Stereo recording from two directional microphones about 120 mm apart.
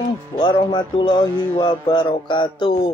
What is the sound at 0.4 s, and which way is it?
Speech, 40° left (ahead or behind).